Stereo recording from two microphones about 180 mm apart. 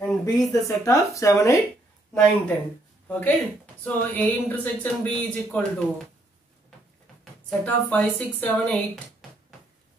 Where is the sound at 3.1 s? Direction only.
10° left (ahead or behind).